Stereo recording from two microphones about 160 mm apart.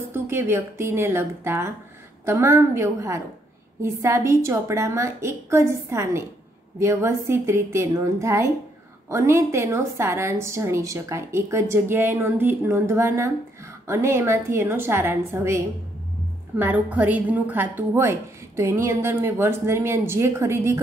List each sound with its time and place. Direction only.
0.1 s a woman's voice: 15° right (ahead or behind)